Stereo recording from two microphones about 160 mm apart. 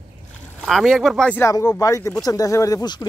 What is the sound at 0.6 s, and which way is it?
Speech, centre (ahead or behind).